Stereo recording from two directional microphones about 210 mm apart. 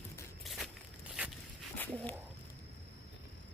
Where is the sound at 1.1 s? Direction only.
Centre (ahead or behind).